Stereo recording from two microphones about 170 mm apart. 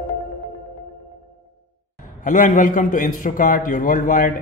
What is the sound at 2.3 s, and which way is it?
A man's voice, 50° left (ahead or behind).